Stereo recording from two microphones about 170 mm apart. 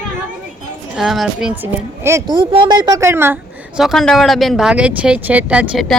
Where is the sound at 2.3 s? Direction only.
30° right (ahead or behind); by 3.3 s 15° right (ahead or behind).